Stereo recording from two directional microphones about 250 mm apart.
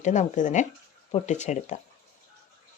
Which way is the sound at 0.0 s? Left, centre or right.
Left.